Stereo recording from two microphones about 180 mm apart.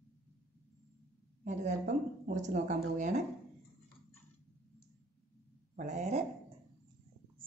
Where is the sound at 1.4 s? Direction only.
40° right (ahead or behind).